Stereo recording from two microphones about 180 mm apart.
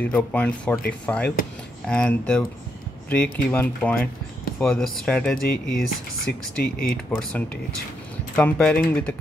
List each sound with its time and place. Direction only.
0.0 s speech: 10° left (ahead or behind)
6.6 s speech: 55° left (ahead or behind)
8.4 s speech: 5° left (ahead or behind)